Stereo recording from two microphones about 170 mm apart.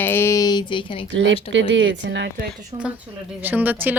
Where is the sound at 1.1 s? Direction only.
90° right.